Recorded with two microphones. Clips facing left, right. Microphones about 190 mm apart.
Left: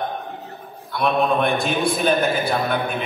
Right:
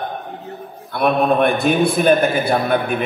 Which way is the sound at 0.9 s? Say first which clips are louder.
Right 3 dB; 55° right (ahead or behind).